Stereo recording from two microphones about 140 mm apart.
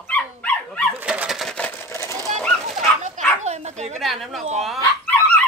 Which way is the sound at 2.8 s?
50° right (ahead or behind).